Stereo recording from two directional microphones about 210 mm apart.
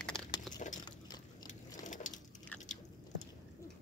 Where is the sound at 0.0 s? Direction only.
5° left (ahead or behind).